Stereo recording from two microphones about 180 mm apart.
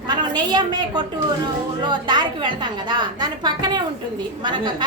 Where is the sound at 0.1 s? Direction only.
25° right (ahead or behind).